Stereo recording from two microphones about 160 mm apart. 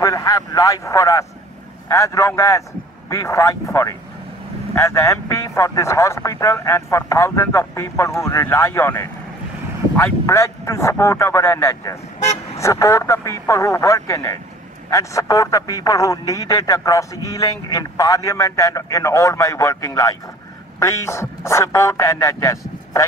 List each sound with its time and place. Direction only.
0.0 s a man's voice: 20° left (ahead or behind)